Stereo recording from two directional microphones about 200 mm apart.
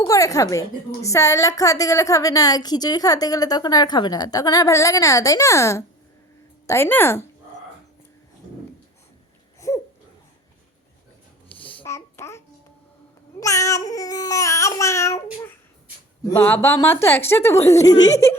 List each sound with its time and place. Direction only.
0.0 s a woman's voice: 15° left (ahead or behind)
9.6 s a sound: 15° left (ahead or behind)
11.4 s a sound: 10° left (ahead or behind)
11.9 s babbling: 15° left (ahead or behind)
13.4 s a woman's voice: 15° left (ahead or behind)
16.3 s a woman's voice: 10° left (ahead or behind)